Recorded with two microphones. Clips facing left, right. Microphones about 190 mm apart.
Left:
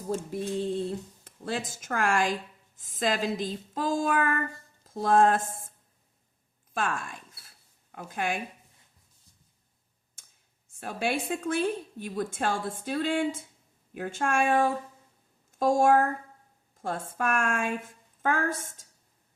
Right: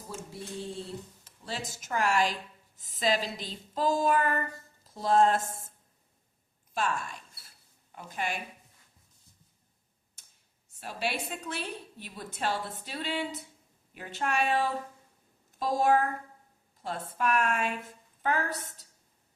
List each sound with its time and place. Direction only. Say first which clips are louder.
1.2 s a woman's voice: left 7 dB; 50° left (ahead or behind)
4.0 s a sound: even; 50° left (ahead or behind)
6.7 s a woman's voice: left 1 dB; 50° left (ahead or behind)
10.8 s a woman's voice: left 4 dB; 50° left (ahead or behind)